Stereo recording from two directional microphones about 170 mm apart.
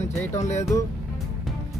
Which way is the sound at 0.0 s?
40° left (ahead or behind).